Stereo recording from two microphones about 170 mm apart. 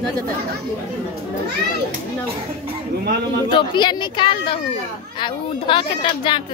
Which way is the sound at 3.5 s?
25° left (ahead or behind).